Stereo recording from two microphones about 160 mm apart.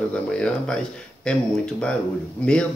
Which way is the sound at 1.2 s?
5° left (ahead or behind).